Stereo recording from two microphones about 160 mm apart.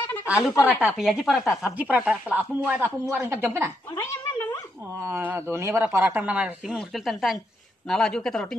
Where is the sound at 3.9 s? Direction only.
20° left (ahead or behind).